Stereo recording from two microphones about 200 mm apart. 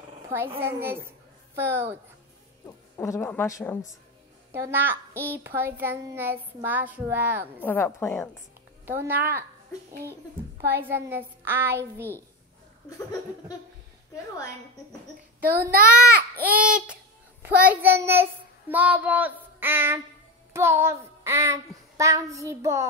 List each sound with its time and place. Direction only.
0.6 s a child's voice: 10° right (ahead or behind)
2.6 s speech: 15° left (ahead or behind)
4.5 s a child's voice: 10° right (ahead or behind)
7.6 s speech: 10° left (ahead or behind)
8.8 s a child's voice: 10° right (ahead or behind)
10.8 s a child's voice: 10° right (ahead or behind)
15.5 s a child's voice: 50° right (ahead or behind)
16.3 s child singing: 5° right (ahead or behind)
20.5 s a child's voice: 10° right (ahead or behind)